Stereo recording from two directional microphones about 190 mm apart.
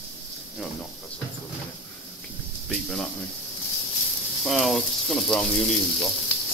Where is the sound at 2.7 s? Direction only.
Centre (ahead or behind).